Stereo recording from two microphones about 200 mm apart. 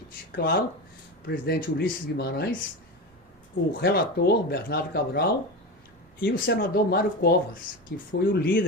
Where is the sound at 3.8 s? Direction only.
55° left (ahead or behind).